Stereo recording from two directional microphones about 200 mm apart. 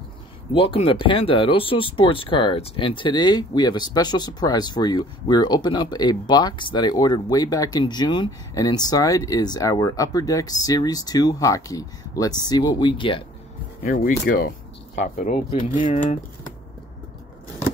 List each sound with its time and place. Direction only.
0.5 s speech: 25° left (ahead or behind)
13.8 s speech: 45° left (ahead or behind)